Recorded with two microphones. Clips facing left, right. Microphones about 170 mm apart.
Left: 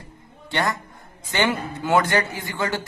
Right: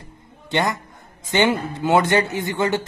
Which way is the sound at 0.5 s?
20° right (ahead or behind).